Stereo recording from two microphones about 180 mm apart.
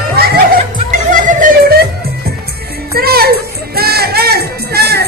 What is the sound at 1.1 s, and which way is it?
Music, 45° right (ahead or behind).